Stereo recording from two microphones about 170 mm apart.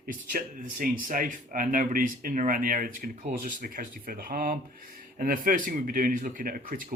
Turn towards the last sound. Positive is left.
turn(degrees=-55)  # may be behind; listen again after turning